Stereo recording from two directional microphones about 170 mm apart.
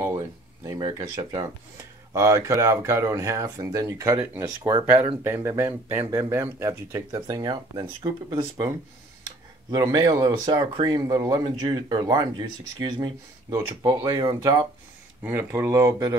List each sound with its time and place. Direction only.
0.7 s speech: 25° right (ahead or behind)
15.2 s speech: 15° right (ahead or behind)